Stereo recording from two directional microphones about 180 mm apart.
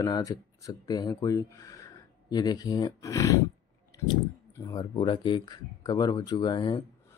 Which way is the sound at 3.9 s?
15° left (ahead or behind).